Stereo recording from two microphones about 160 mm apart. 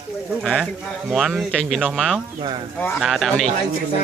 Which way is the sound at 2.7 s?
15° left (ahead or behind).